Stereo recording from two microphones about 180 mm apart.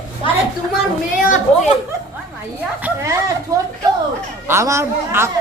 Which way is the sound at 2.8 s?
15° right (ahead or behind).